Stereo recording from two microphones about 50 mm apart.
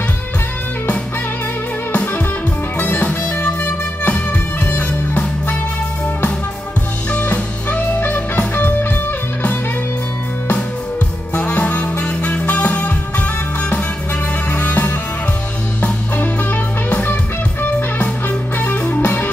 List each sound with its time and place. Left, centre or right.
1.9 s music: left
7.1 s music: left
11.3 s music: left
14.5 s music: left